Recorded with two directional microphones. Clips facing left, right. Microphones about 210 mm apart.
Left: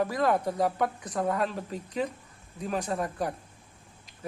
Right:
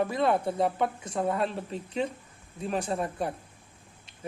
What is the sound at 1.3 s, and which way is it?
Speech, 30° right (ahead or behind).